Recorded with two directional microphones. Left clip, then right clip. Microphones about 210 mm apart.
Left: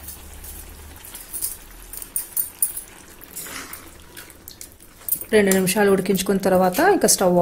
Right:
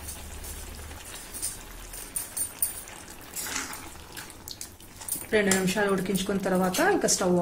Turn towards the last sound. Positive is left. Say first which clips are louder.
# left 7 dB
turn(degrees=40)  # may be behind; listen again after turning